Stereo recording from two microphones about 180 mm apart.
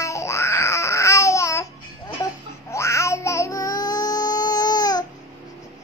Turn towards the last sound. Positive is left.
turn(degrees=20)  # may be behind; listen again after turning